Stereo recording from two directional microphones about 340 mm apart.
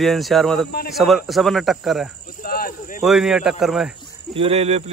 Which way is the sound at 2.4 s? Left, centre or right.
Left.